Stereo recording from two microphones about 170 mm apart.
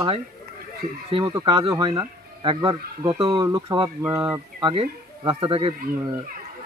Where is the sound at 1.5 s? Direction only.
35° right (ahead or behind).